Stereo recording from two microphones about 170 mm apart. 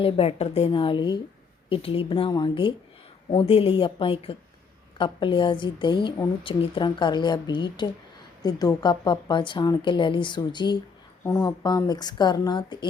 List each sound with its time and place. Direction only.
0.0 s a woman's voice: 35° left (ahead or behind)